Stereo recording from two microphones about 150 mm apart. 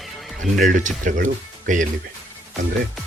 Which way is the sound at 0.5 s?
60° right (ahead or behind).